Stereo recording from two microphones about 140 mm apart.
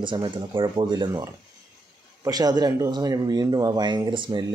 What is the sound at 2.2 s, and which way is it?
Speech, 25° right (ahead or behind).